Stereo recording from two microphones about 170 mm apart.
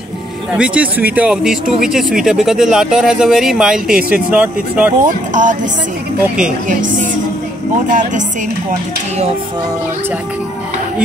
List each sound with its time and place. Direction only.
0.5 s speech: 5° right (ahead or behind)
5.0 s speech: 50° right (ahead or behind)
6.7 s speech: 50° right (ahead or behind)